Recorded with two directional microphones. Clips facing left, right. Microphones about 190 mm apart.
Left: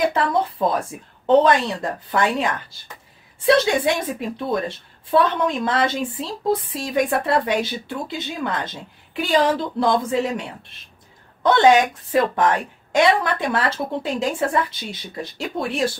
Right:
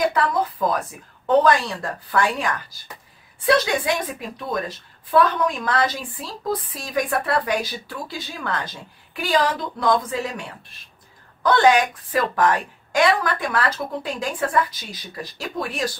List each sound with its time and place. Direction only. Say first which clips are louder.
0.1 s a woman's voice: left 1 dB; 25° left (ahead or behind)
4.4 s a woman's voice: left 1 dB; 30° left (ahead or behind)
11.4 s a woman's voice: left 2 dB; 25° left (ahead or behind)